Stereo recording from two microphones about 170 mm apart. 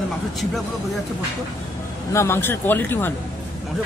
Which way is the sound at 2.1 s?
15° left (ahead or behind).